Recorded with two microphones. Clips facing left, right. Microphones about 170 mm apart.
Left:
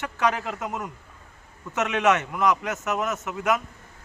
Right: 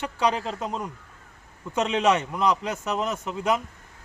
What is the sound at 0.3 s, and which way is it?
A man's voice, 30° right (ahead or behind).